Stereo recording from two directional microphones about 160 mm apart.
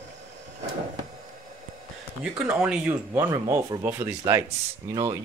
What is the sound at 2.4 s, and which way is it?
Speech, 5° right (ahead or behind).